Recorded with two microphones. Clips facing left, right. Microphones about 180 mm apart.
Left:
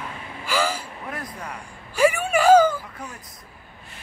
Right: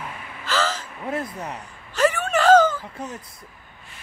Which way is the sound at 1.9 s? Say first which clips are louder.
Left 1 dB; 10° left (ahead or behind).